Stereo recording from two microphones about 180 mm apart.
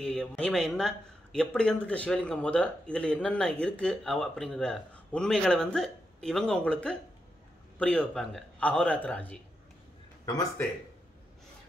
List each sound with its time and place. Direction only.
0.0 s a man's voice: 5° left (ahead or behind)
10.2 s speech: 20° left (ahead or behind)